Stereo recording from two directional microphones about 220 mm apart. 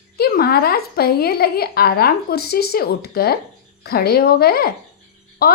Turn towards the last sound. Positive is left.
turn(degrees=45)  # may be behind; listen again after turning